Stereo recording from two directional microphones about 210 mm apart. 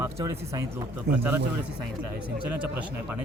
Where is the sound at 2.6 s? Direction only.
5° right (ahead or behind).